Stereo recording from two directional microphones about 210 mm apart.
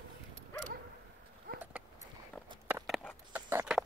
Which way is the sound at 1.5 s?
45° right (ahead or behind).